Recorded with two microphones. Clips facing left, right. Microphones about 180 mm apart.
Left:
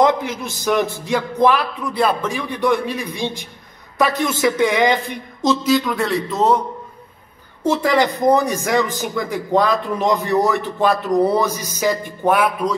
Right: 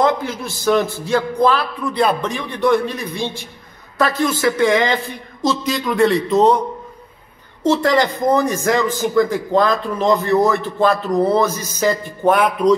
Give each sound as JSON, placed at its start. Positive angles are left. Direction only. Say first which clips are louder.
{"t": 0.0, "sound": "a man's voice", "louder": "left 1 dB", "side_deg": 15}
{"t": 5.6, "sound": "a man's voice", "louder": "right 1 dB", "side_deg": 0}
{"t": 7.6, "sound": "a man's voice", "louder": "right 1 dB", "side_deg": 10}